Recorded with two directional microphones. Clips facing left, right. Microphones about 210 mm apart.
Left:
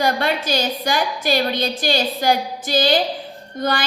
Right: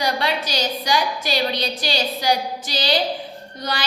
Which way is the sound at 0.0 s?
50° left (ahead or behind).